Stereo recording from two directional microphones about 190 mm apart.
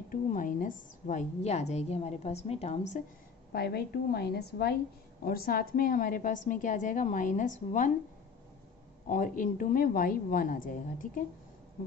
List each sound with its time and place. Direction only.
0.1 s a sound: 45° left (ahead or behind)
1.0 s a woman's voice: 35° left (ahead or behind)
3.5 s a woman's voice: 55° left (ahead or behind)
9.1 s a woman's voice: 45° left (ahead or behind)